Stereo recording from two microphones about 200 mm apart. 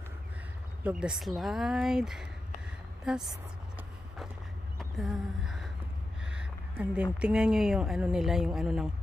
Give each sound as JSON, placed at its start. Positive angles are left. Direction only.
{"t": 0.8, "sound": "speech", "side_deg": -5}
{"t": 4.7, "sound": "a sound", "side_deg": 0}
{"t": 6.2, "sound": "a woman's voice", "side_deg": -5}